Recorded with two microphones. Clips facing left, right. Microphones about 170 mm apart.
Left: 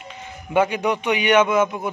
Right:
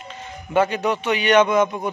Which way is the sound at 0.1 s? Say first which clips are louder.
Even; 10° left (ahead or behind).